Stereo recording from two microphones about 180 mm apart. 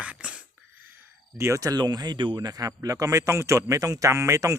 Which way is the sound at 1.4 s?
15° right (ahead or behind).